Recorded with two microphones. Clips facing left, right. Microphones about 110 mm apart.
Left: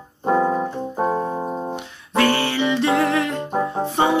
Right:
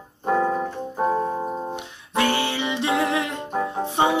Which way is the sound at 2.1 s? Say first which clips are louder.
Left 3 dB; 15° right (ahead or behind).